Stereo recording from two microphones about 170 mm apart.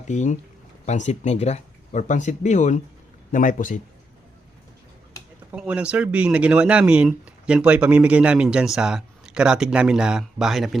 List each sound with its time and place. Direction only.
0.1 s speech: 45° left (ahead or behind)
5.5 s speech: 5° right (ahead or behind)